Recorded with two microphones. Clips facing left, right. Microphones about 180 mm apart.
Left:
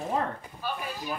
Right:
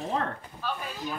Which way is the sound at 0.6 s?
10° left (ahead or behind).